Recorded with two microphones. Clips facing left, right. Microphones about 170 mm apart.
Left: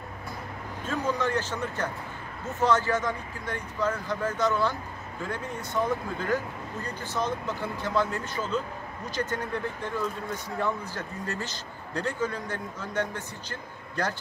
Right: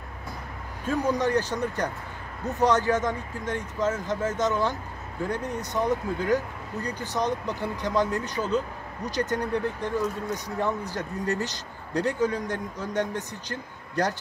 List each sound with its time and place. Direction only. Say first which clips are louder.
0.8 s a man's voice: right 4 dB; 15° right (ahead or behind)